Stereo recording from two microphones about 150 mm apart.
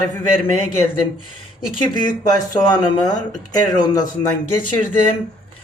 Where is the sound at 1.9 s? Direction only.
30° left (ahead or behind).